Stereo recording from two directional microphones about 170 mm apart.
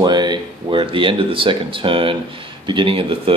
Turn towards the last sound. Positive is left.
turn(degrees=-30)  # may be behind; listen again after turning